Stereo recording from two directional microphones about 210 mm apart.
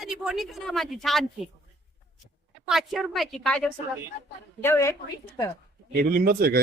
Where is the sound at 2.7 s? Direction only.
Centre (ahead or behind).